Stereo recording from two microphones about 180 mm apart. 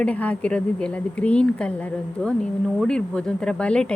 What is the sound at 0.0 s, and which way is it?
Speech, 5° left (ahead or behind).